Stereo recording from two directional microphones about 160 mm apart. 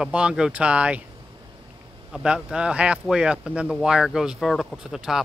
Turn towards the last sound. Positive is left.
turn(degrees=-5)  # may be behind; listen again after turning